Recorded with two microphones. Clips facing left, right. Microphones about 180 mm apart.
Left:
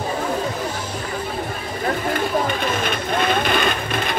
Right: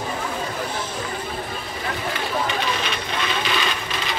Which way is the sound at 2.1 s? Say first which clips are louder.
Left 4 dB; 50° left (ahead or behind).